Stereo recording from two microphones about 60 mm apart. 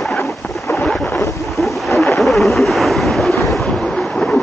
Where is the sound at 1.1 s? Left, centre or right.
Left.